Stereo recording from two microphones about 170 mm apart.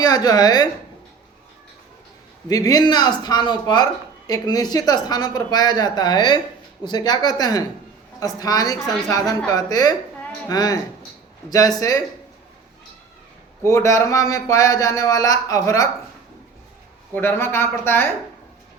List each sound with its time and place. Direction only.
0.0 s speech: 20° left (ahead or behind)
2.5 s speech: 20° left (ahead or behind)
13.7 s speech: 15° left (ahead or behind)
17.2 s speech: 15° left (ahead or behind)